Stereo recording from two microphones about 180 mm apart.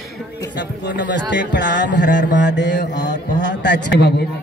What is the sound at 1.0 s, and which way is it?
Mantra, 80° left.